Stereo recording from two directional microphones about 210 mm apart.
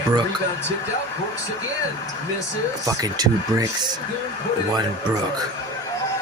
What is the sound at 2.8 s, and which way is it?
Speech, 15° right (ahead or behind).